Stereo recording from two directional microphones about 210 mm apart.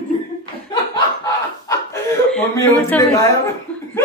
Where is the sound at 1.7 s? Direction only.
15° left (ahead or behind).